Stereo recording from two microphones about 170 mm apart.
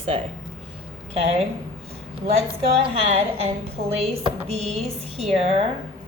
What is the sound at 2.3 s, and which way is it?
A woman's voice, 35° right (ahead or behind).